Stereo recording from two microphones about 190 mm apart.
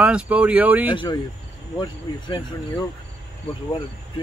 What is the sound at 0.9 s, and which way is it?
Speech, 20° left (ahead or behind).